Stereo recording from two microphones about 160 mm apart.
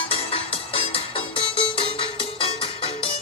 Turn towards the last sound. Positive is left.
turn(degrees=35)  # may be behind; listen again after turning